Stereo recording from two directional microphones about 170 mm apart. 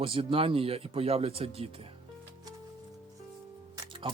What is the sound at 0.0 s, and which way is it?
A man's voice, 30° right (ahead or behind).